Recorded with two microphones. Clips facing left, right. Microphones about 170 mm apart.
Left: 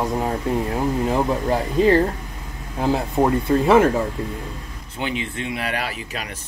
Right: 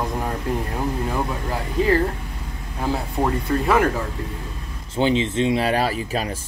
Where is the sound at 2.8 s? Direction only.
20° left (ahead or behind).